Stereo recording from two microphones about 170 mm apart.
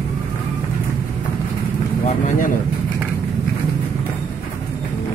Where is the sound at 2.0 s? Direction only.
50° left (ahead or behind).